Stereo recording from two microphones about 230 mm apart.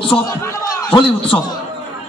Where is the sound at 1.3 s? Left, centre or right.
Centre.